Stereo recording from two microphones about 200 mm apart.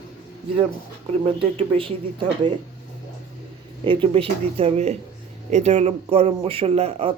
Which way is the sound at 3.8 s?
25° right (ahead or behind).